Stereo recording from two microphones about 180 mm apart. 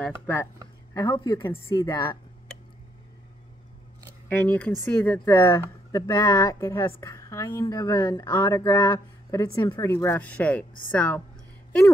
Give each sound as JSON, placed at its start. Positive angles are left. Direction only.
{"t": 0.9, "sound": "a woman's voice", "side_deg": 25}
{"t": 4.3, "sound": "a woman's voice", "side_deg": 10}